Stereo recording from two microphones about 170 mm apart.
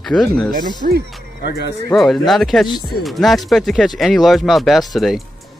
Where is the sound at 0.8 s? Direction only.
55° right (ahead or behind).